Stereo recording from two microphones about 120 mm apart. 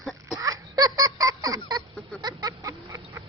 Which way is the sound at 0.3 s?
30° right (ahead or behind).